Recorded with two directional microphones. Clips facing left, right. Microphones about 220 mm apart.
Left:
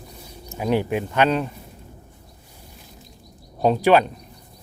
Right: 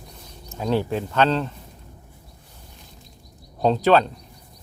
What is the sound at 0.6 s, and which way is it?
Speech, 15° left (ahead or behind).